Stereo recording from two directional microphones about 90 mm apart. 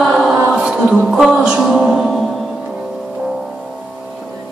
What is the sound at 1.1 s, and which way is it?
Music, centre (ahead or behind).